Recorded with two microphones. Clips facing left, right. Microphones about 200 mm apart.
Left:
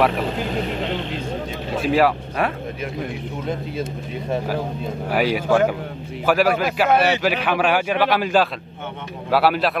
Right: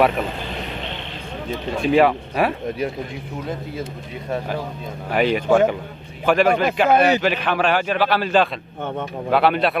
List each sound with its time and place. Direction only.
1.8 s speech: 5° left (ahead or behind)
5.1 s a man's voice: 5° left (ahead or behind)